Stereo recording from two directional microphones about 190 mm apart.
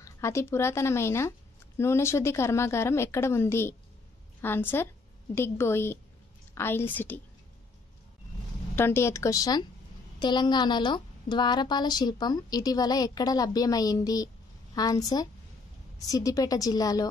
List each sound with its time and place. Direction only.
0.0 s a woman's voice: 15° left (ahead or behind)
8.7 s a woman's voice: 10° left (ahead or behind)